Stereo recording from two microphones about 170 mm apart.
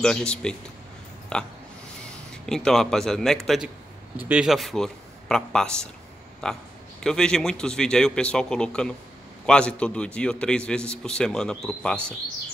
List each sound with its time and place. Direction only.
0.0 s a man's voice: 5° left (ahead or behind)